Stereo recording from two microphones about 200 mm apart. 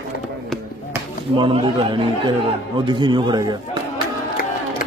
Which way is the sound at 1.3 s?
25° right (ahead or behind).